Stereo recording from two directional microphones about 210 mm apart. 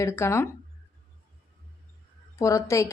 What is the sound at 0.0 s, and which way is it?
Speech, 15° left (ahead or behind).